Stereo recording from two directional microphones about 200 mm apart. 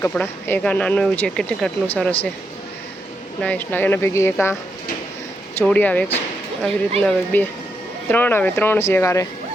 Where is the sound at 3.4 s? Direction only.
5° left (ahead or behind).